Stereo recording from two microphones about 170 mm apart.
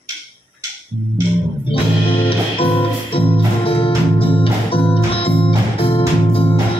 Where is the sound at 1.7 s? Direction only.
30° left (ahead or behind).